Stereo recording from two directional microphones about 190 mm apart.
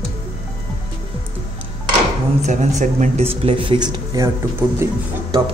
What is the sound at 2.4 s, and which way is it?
Speech, 40° right (ahead or behind).